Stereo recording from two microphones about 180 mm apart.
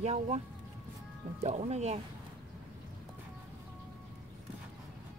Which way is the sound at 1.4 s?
35° right (ahead or behind).